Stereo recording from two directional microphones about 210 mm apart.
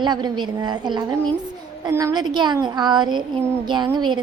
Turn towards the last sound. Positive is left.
turn(degrees=-20)  # may be behind; listen again after turning